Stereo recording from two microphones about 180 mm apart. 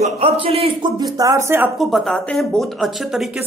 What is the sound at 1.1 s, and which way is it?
Speech, 15° right (ahead or behind).